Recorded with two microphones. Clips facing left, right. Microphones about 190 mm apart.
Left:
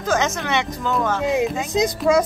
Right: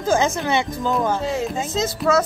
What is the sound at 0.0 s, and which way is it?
Speech, 30° right (ahead or behind).